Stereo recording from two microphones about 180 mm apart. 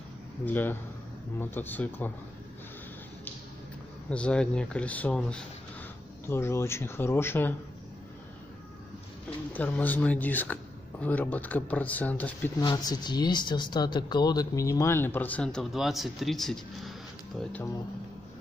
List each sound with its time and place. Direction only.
0.5 s a man's voice: 10° left (ahead or behind)
4.1 s a man's voice: 5° left (ahead or behind)
9.5 s a man's voice: 10° left (ahead or behind)
12.5 s a man's voice: 20° left (ahead or behind)